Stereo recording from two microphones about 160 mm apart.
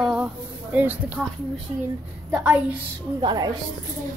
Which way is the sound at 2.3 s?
10° right (ahead or behind).